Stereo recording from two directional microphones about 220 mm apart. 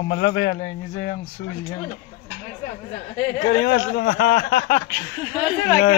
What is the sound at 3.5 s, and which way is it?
A man's voice, 45° left (ahead or behind).